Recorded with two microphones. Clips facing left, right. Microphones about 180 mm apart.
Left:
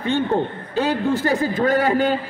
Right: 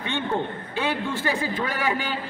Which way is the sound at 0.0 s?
40° left (ahead or behind).